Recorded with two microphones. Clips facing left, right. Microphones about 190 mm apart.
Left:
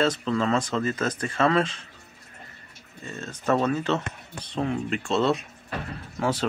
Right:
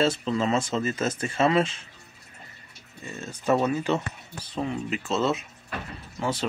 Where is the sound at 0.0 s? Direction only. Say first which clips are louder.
Even; 25° right (ahead or behind).